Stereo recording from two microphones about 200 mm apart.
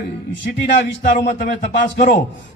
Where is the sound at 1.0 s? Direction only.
40° left (ahead or behind).